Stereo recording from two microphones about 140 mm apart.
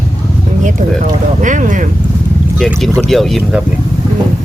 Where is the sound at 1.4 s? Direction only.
65° right (ahead or behind).